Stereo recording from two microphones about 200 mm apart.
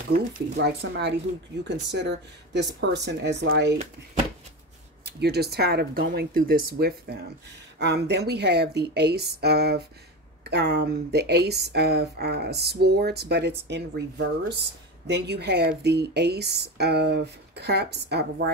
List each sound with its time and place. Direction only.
0.1 s a woman's voice: 55° right (ahead or behind)
5.0 s a woman's voice: 55° right (ahead or behind)